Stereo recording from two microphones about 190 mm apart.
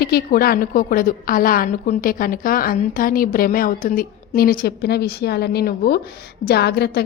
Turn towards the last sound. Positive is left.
turn(degrees=60)  # may be behind; listen again after turning